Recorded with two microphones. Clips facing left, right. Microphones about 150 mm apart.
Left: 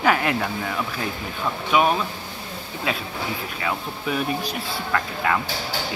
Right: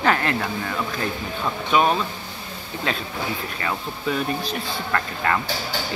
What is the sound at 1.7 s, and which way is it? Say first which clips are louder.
Speech: even; 5° left (ahead or behind).